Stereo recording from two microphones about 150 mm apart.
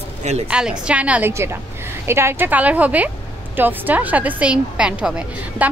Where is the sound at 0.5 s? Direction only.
5° right (ahead or behind).